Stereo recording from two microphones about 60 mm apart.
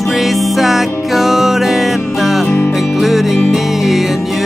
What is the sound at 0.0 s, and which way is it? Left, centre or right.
Music, centre.